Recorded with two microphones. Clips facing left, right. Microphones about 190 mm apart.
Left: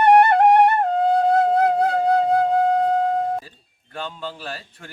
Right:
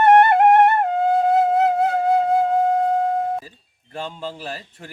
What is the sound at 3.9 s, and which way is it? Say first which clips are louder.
A man's voice: right 1 dB; 25° right (ahead or behind).